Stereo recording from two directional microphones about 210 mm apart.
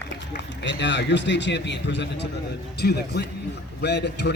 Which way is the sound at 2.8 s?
45° left (ahead or behind).